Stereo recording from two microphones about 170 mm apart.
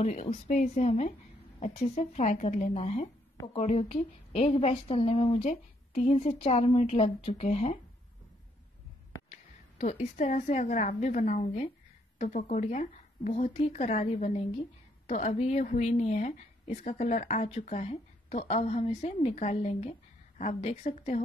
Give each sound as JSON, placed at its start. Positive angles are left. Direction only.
{"t": 0.0, "sound": "speech", "side_deg": 40}
{"t": 9.3, "sound": "a woman's voice", "side_deg": 40}